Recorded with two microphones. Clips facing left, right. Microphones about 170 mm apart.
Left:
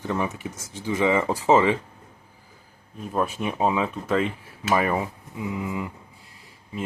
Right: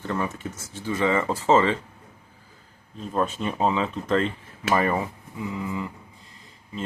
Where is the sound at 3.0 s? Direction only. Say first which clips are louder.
Even; 10° left (ahead or behind).